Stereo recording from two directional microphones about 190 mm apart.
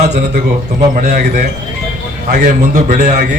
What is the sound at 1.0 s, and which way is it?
A man's voice, 40° right (ahead or behind).